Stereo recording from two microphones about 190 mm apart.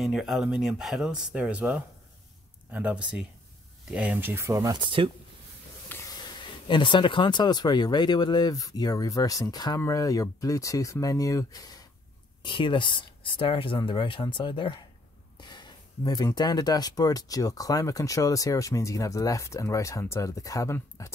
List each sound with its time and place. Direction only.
0.0 s speech: centre (ahead or behind); by 5.1 s 25° right (ahead or behind)
5.9 s speech: 15° left (ahead or behind)